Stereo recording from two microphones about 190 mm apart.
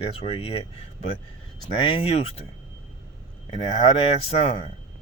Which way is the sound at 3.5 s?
30° left (ahead or behind).